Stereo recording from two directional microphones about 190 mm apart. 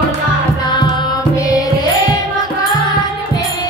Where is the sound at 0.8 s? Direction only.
25° left (ahead or behind).